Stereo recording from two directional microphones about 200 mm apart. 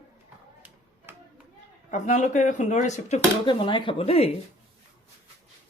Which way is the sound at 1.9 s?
40° left (ahead or behind).